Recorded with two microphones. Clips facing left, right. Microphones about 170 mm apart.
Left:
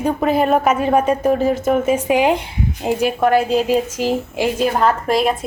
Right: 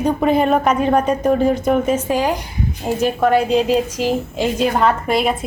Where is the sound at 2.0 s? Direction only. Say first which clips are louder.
Left 3 dB; 20° left (ahead or behind).